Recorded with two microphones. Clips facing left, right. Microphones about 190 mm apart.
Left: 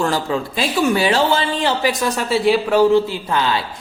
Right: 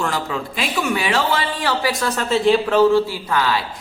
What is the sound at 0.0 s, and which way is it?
A man's voice, 35° left (ahead or behind).